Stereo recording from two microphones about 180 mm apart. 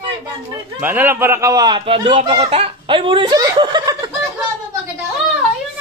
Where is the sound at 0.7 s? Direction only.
10° right (ahead or behind).